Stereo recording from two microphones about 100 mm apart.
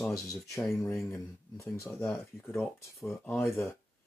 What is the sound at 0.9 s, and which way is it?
Speech, 30° left (ahead or behind).